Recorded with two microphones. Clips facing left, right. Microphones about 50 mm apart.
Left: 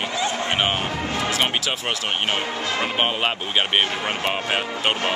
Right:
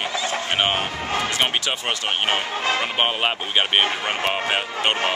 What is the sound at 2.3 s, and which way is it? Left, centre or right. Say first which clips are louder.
Speech: right 2 dB; right.